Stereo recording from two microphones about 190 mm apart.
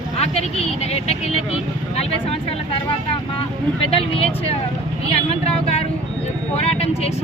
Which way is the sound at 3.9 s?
30° left (ahead or behind).